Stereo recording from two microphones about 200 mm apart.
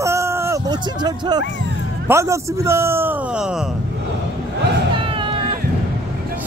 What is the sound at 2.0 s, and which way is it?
A man's voice, 15° right (ahead or behind).